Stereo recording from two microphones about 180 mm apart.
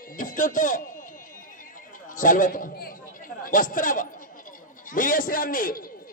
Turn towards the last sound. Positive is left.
turn(degrees=50)  # may be behind; listen again after turning